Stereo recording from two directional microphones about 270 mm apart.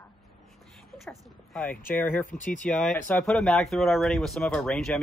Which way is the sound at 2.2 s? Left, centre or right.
Left.